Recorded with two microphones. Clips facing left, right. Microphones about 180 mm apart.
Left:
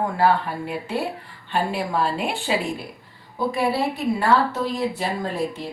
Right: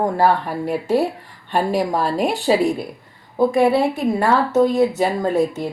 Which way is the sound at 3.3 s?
50° right (ahead or behind).